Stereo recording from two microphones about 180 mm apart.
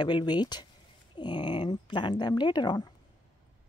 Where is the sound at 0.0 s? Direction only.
25° left (ahead or behind).